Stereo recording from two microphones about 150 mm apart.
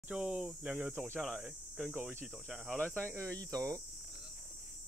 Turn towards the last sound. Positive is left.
turn(degrees=-25)  # may be behind; listen again after turning